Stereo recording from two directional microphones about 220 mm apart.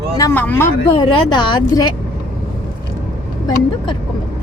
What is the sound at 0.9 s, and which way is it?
Speech, 20° left (ahead or behind).